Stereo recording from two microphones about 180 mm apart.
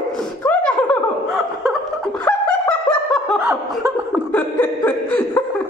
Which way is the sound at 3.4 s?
20° right (ahead or behind).